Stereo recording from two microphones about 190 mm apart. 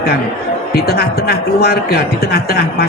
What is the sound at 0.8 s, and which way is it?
A man's voice, 55° left (ahead or behind).